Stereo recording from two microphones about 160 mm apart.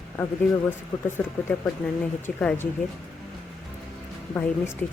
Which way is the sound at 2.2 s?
10° left (ahead or behind).